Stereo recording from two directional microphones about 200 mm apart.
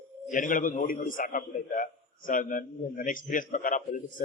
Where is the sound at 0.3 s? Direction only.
40° left (ahead or behind).